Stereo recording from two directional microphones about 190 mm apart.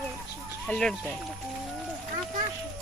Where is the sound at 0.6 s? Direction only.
5° left (ahead or behind).